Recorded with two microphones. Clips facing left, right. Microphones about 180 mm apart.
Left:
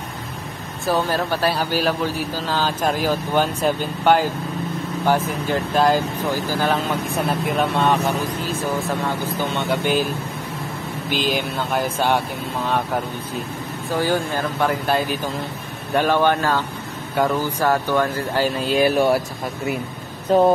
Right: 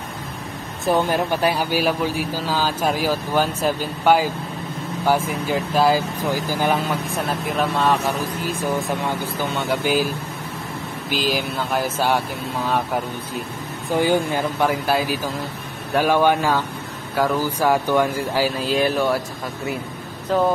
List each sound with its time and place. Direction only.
0.8 s a man's voice: 15° right (ahead or behind)
7.1 s speech: centre (ahead or behind)
8.5 s a man's voice: 15° right (ahead or behind)
11.1 s speech: centre (ahead or behind)
13.8 s a man's voice: 15° right (ahead or behind); by 18.9 s centre (ahead or behind)
20.2 s speech: 30° left (ahead or behind)